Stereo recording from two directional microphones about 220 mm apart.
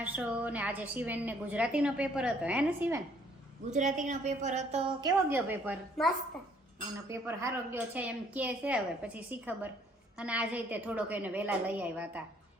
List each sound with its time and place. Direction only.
0.0 s a woman's voice: 5° right (ahead or behind)
3.7 s a woman's voice: 35° right (ahead or behind)
4.9 s a woman's voice: 15° right (ahead or behind)
7.1 s a woman's voice: 10° right (ahead or behind)